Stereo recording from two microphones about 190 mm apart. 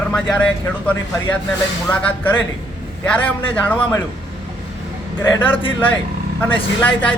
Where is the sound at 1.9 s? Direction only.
10° left (ahead or behind).